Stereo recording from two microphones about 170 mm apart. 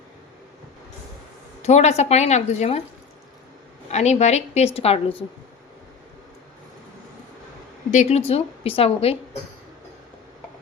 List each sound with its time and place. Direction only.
1.6 s a woman's voice: 40° left (ahead or behind)
3.9 s a woman's voice: 40° left (ahead or behind)
7.9 s a woman's voice: 45° left (ahead or behind)
8.3 s a woman's voice: 35° left (ahead or behind)